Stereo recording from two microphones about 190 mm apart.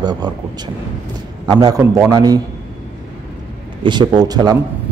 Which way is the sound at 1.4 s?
20° right (ahead or behind).